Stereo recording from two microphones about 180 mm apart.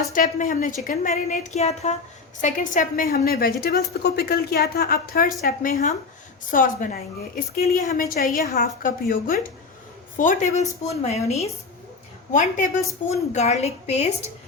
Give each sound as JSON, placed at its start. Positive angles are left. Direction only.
{"t": 0.1, "sound": "a woman's voice", "side_deg": 50}
{"t": 2.4, "sound": "a woman's voice", "side_deg": 50}
{"t": 13.0, "sound": "a woman's voice", "side_deg": 45}